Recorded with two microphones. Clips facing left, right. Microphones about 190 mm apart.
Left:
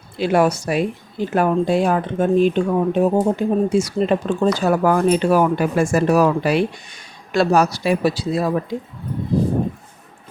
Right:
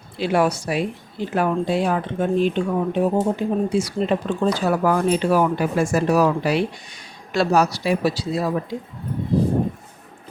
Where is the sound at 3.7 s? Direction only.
45° left (ahead or behind).